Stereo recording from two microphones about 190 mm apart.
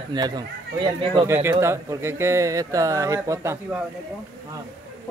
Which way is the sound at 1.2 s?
15° right (ahead or behind).